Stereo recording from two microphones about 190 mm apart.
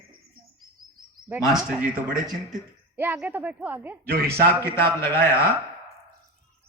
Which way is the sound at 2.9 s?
10° right (ahead or behind).